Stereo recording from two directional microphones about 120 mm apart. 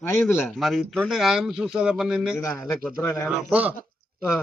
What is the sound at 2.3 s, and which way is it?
Speech, 25° left (ahead or behind).